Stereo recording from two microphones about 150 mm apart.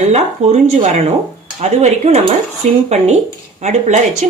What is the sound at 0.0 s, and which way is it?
Speech, 50° right (ahead or behind).